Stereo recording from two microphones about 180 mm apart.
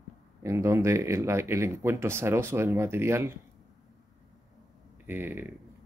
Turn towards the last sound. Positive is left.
turn(degrees=-10)  # may be behind; listen again after turning